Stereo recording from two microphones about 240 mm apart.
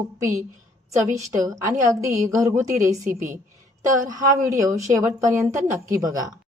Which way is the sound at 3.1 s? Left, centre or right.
Right.